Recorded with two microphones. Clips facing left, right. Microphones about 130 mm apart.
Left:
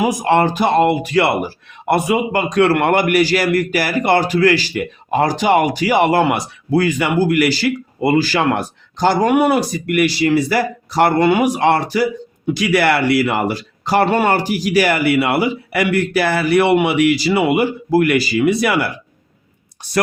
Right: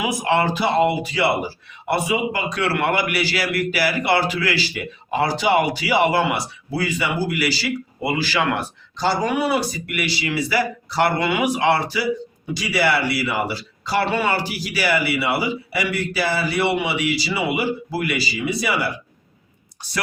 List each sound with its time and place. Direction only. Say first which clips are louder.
0.0 s speech: left 5 dB; 40° left (ahead or behind)
12.5 s speech: left 5 dB; 60° left (ahead or behind)